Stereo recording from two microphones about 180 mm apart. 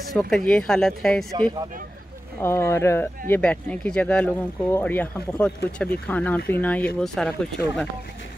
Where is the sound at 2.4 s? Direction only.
15° left (ahead or behind).